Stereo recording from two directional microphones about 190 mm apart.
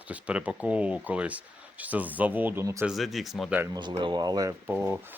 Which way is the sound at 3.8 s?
25° right (ahead or behind).